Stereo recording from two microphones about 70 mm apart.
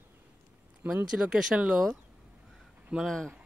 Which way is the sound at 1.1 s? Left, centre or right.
Centre.